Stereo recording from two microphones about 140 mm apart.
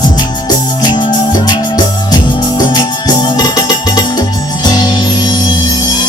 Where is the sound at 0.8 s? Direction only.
30° left (ahead or behind).